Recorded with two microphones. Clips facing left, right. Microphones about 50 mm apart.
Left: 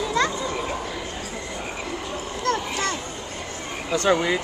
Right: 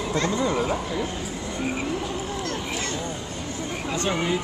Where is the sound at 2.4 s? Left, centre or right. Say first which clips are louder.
Left 5 dB; left.